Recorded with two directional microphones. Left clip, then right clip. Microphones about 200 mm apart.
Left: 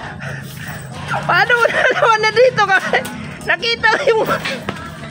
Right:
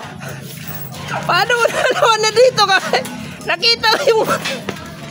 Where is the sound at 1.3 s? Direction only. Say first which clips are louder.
Left 1 dB; 10° right (ahead or behind).